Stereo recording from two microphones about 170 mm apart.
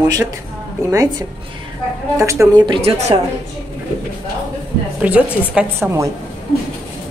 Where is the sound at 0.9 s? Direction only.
20° right (ahead or behind); by 3.1 s 40° right (ahead or behind).